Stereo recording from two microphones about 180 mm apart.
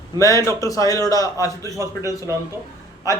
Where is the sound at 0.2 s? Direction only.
15° left (ahead or behind).